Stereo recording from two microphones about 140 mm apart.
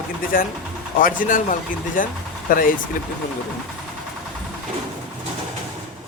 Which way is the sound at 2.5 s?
85° left.